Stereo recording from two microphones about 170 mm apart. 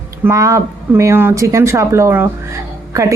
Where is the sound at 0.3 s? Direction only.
20° right (ahead or behind).